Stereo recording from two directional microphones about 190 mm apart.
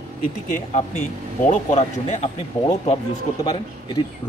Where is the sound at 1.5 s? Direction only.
35° left (ahead or behind).